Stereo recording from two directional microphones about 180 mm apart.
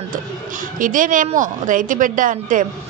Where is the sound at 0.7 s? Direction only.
50° right (ahead or behind).